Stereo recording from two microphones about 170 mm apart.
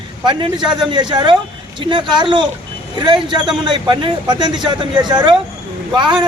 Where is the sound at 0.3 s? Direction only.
25° right (ahead or behind).